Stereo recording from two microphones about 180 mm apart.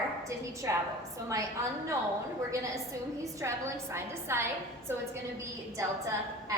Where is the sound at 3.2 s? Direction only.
15° right (ahead or behind).